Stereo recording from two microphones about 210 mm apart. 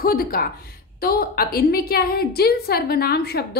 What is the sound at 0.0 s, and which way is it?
A woman's voice, 45° left (ahead or behind).